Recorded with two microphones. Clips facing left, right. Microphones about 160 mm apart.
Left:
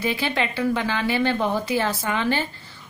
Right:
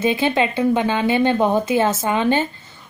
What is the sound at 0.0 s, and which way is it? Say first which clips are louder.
Speech: right 6 dB; 20° right (ahead or behind).